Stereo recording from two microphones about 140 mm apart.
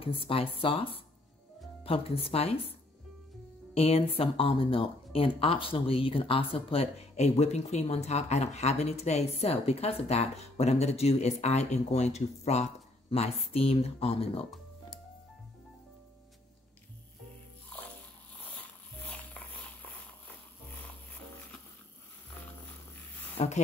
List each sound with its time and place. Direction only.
0.0 s speech: 40° left (ahead or behind)
3.7 s speech: 45° left (ahead or behind)
23.3 s speech: 50° left (ahead or behind)